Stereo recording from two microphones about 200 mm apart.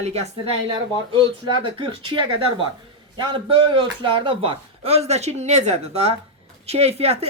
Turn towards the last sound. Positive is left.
turn(degrees=-30)  # may be behind; listen again after turning